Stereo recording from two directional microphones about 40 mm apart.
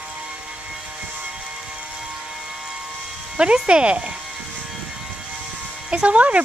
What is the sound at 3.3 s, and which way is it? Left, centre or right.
Speech, right.